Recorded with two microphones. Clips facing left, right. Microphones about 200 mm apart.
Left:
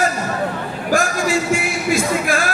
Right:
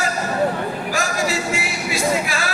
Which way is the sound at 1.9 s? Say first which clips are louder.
Left 3 dB; 50° left (ahead or behind).